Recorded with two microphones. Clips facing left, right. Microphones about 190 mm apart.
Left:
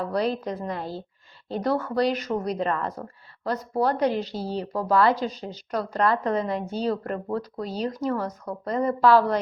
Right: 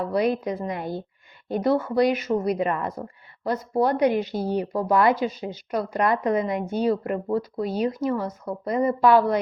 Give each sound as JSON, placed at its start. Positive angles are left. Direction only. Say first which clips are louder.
{"t": 0.0, "sound": "speech", "louder": "right 3 dB", "side_deg": -10}